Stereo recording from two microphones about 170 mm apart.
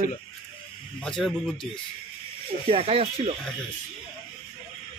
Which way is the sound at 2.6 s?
35° right (ahead or behind).